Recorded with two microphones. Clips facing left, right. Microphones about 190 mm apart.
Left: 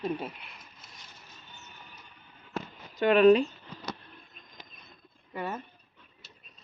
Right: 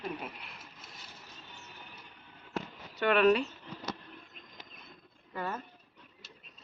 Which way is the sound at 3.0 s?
35° left (ahead or behind).